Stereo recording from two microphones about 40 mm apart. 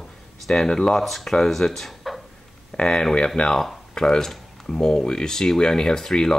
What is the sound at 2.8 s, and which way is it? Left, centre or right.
Speech, centre.